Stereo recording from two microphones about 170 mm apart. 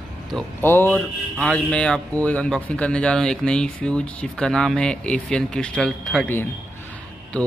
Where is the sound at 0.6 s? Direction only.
15° left (ahead or behind).